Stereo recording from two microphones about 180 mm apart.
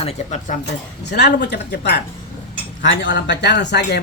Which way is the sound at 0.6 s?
70° left (ahead or behind).